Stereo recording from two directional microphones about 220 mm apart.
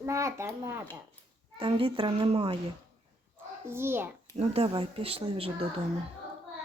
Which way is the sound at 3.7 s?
10° right (ahead or behind).